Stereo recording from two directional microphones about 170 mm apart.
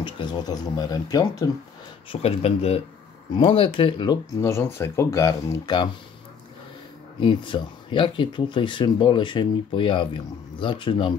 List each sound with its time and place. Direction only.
0.0 s speech: 25° left (ahead or behind)
2.0 s speech: 35° left (ahead or behind)
7.2 s speech: 30° left (ahead or behind)